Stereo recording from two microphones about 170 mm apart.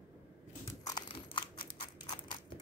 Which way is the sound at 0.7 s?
25° left (ahead or behind).